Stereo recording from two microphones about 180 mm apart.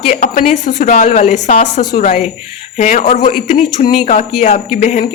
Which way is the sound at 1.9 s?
45° left (ahead or behind).